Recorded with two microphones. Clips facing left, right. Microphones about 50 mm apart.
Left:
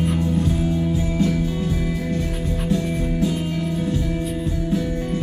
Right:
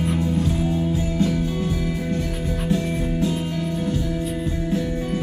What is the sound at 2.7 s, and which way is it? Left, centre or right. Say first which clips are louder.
Music: even; centre.